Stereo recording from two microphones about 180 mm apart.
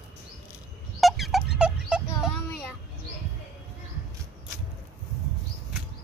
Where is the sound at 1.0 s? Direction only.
Centre (ahead or behind).